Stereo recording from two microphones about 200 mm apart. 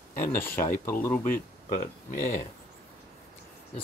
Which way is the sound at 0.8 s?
10° left (ahead or behind).